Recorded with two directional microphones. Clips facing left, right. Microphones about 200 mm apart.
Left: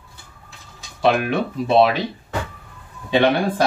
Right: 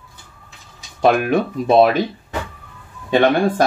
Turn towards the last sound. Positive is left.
turn(degrees=-45)  # may be behind; listen again after turning